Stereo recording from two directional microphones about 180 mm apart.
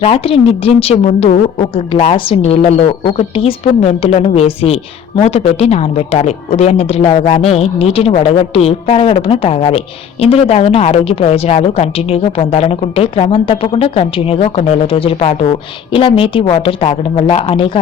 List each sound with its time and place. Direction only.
0.0 s a woman's voice: 30° left (ahead or behind)